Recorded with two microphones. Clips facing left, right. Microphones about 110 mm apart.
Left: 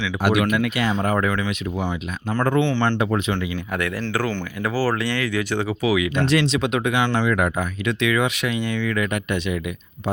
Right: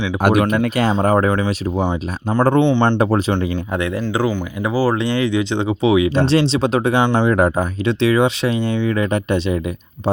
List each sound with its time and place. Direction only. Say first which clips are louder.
0.2 s speech: right 4 dB; 50° right (ahead or behind); by 1.8 s 30° right (ahead or behind)
1.8 s speech: right 6 dB; 20° right (ahead or behind)
3.0 s speech: right 5 dB; 35° right (ahead or behind)
3.3 s speech: right 5 dB; 20° right (ahead or behind)
7.0 s speech: right 5 dB; 20° right (ahead or behind)
7.3 s speech: right 6 dB; 35° right (ahead or behind)